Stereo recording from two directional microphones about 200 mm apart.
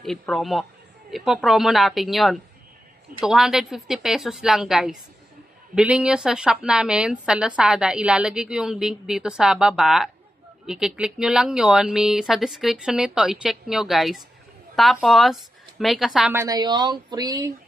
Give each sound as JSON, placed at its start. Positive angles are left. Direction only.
{"t": 0.0, "sound": "a woman's voice", "side_deg": 0}
{"t": 16.4, "sound": "speech", "side_deg": -20}